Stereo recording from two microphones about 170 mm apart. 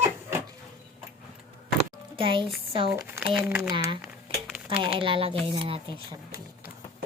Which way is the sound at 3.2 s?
Centre (ahead or behind).